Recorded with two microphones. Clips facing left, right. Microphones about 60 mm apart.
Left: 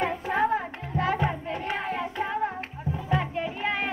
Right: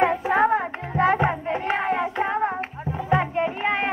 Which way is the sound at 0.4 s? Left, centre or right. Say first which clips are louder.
Right 3 dB; right.